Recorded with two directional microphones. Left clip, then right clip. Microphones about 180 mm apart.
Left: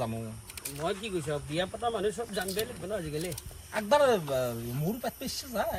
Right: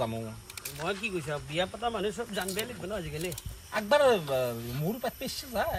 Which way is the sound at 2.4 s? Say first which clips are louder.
Left 1 dB; centre (ahead or behind).